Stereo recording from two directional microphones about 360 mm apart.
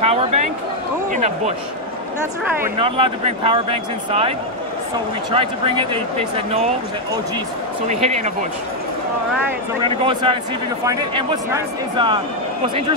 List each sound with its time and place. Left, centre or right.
0.0 s a sound: centre
1.1 s speech: centre
2.6 s speech: centre
5.3 s speech: centre
7.9 s speech: centre
9.8 s speech: centre